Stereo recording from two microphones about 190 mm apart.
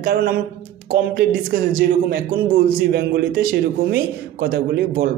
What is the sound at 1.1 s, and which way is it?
A man's voice, 45° right (ahead or behind).